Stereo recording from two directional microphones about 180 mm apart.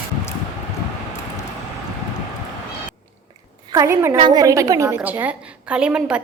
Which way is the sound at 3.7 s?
15° right (ahead or behind).